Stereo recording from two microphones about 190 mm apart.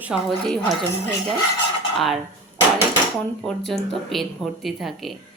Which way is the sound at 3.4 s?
Centre (ahead or behind).